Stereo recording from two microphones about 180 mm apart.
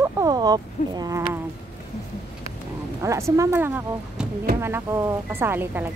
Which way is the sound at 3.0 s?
15° right (ahead or behind).